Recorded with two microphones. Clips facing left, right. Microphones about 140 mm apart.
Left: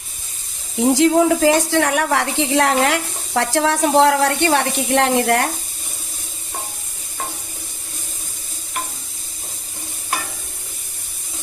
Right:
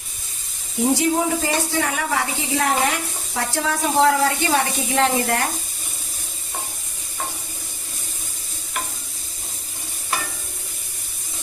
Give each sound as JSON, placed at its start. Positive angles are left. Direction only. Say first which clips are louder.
{"t": 0.8, "sound": "a woman's voice", "louder": "left 5 dB", "side_deg": 90}